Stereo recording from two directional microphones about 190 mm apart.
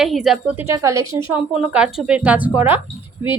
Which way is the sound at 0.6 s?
15° right (ahead or behind).